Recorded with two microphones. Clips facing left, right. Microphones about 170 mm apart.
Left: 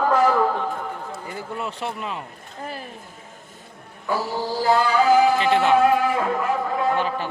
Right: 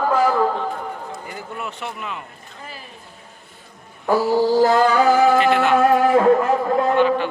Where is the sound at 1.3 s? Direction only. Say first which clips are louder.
Left 1 dB; 30° left (ahead or behind).